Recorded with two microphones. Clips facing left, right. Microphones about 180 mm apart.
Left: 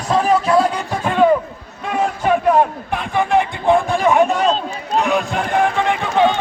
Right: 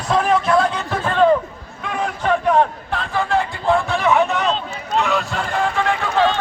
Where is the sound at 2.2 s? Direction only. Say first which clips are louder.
Left 1 dB; 10° left (ahead or behind).